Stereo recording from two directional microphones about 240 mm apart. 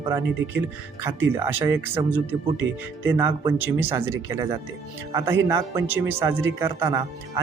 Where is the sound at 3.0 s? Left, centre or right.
Centre.